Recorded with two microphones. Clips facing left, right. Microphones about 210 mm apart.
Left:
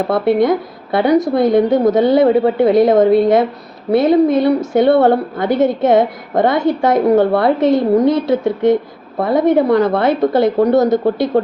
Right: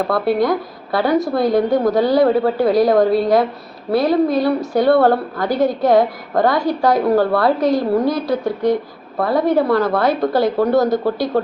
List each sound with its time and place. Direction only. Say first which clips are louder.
0.1 s a woman's voice: left 5 dB; 20° left (ahead or behind)